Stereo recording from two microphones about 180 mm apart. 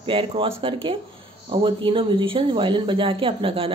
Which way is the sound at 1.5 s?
30° right (ahead or behind).